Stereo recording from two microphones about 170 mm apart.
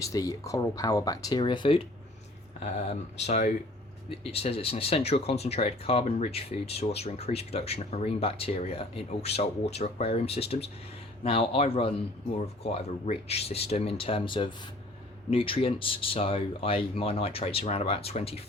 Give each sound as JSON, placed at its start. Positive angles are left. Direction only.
{"t": 0.0, "sound": "speech", "side_deg": 20}